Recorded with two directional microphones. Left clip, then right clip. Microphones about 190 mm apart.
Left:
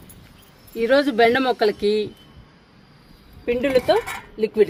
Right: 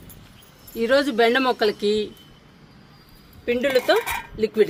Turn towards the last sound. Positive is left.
turn(degrees=10)  # may be behind; listen again after turning